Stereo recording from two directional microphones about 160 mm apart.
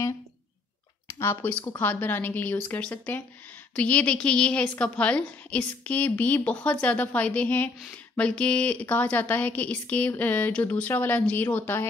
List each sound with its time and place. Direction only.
1.2 s a woman's voice: 15° left (ahead or behind)